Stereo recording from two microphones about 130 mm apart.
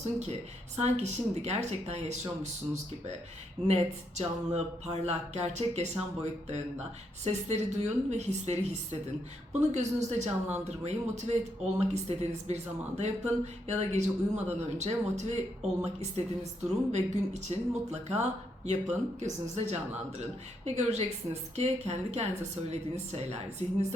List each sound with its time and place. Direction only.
0.0 s speech: 60° right (ahead or behind)
3.7 s speech: 55° right (ahead or behind)
7.3 s speech: 60° right (ahead or behind)